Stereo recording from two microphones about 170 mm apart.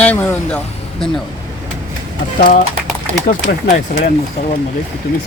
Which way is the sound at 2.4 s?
55° left (ahead or behind).